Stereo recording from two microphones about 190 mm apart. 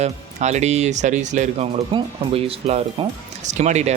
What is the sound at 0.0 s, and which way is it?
Speech, 35° right (ahead or behind).